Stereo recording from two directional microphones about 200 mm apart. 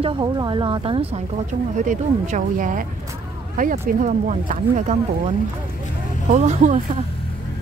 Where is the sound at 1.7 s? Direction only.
40° right (ahead or behind).